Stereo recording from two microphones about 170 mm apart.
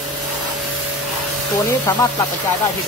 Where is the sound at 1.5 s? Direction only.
20° left (ahead or behind).